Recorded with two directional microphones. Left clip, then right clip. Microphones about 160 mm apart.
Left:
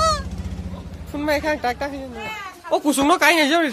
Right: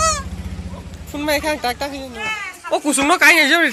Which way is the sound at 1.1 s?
15° right (ahead or behind).